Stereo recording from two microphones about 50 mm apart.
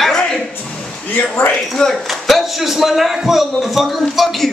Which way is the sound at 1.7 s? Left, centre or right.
Centre.